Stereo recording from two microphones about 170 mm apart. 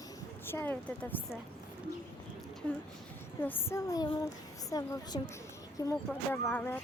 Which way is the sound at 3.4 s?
10° left (ahead or behind).